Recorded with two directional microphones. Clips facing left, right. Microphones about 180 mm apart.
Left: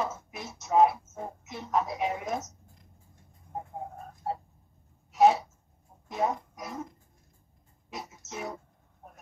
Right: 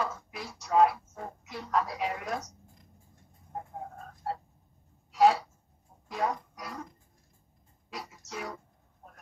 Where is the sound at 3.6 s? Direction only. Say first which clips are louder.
Left 2 dB; 15° left (ahead or behind).